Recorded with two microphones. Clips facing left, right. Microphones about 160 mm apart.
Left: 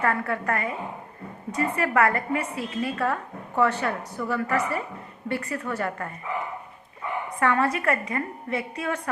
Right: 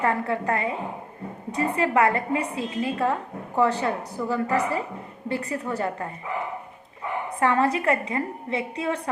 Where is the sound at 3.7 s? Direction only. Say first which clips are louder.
Right 2 dB; 30° right (ahead or behind).